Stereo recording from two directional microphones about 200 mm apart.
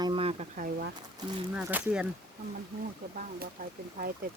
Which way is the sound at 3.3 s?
45° right (ahead or behind).